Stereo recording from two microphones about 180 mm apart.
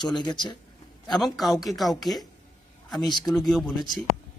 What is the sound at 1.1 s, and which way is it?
Speech, centre (ahead or behind).